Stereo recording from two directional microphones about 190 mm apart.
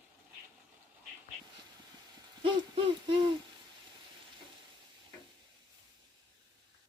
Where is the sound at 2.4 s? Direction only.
25° right (ahead or behind).